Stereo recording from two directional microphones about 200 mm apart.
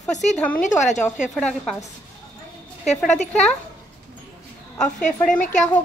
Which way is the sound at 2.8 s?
35° left (ahead or behind).